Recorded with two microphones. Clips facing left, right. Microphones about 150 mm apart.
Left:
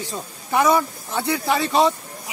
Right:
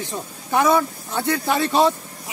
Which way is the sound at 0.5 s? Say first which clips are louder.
Even; centre (ahead or behind).